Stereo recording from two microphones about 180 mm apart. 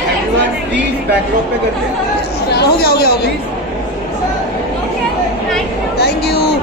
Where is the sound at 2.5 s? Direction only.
60° left (ahead or behind).